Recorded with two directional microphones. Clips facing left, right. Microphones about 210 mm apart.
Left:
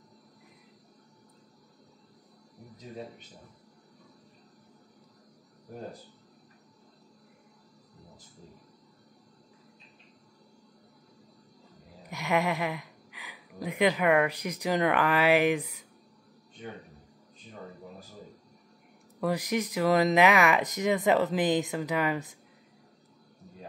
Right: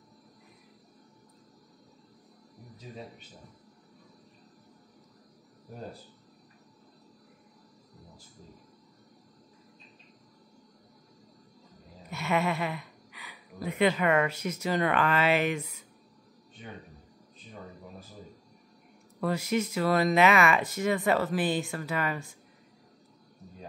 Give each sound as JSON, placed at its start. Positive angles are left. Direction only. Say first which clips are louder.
{"t": 12.1, "sound": "speech", "louder": "left 1 dB", "side_deg": 15}
{"t": 19.1, "sound": "speech", "louder": "even", "side_deg": 15}